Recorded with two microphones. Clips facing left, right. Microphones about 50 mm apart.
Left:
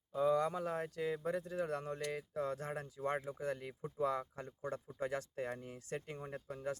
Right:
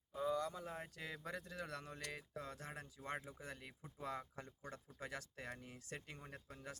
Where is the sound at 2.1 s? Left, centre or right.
Left.